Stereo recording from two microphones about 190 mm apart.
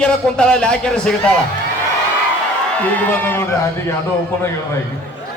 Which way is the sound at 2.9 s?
10° left (ahead or behind).